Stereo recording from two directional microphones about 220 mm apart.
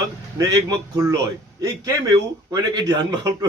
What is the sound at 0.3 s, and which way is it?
Speech, 15° right (ahead or behind).